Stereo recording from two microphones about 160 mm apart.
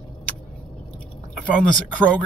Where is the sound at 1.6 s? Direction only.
5° left (ahead or behind).